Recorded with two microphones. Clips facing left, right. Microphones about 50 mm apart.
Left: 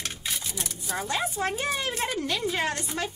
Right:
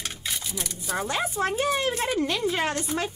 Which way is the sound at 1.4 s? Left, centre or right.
Right.